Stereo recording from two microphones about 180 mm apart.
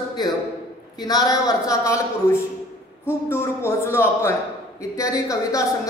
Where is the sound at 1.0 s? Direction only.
20° left (ahead or behind).